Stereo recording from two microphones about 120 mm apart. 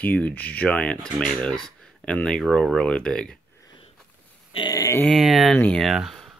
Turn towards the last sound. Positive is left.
turn(degrees=0)  # may be behind; listen again after turning